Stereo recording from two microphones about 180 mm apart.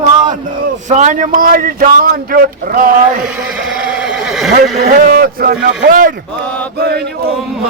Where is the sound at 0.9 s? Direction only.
45° right (ahead or behind).